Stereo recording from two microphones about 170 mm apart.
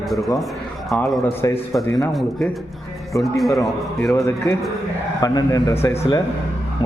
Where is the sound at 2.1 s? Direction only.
Centre (ahead or behind).